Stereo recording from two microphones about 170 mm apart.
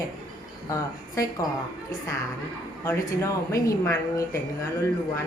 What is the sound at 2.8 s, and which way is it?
A woman's voice, 15° left (ahead or behind).